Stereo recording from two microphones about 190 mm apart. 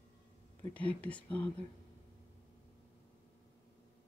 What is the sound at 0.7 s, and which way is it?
Speech, 5° left (ahead or behind).